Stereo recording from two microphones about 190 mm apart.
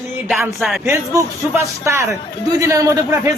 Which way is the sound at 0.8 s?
15° right (ahead or behind).